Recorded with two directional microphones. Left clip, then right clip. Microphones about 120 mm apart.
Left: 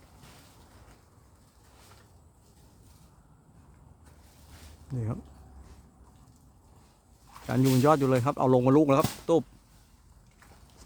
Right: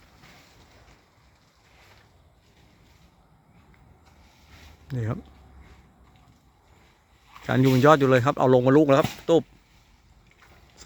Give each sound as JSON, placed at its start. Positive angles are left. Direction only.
{"t": 4.9, "sound": "speech", "side_deg": -20}
{"t": 7.4, "sound": "speech", "side_deg": -30}
{"t": 7.9, "sound": "speech", "side_deg": -15}